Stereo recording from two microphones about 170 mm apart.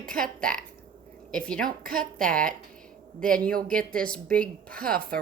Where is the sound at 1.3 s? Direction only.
5° left (ahead or behind).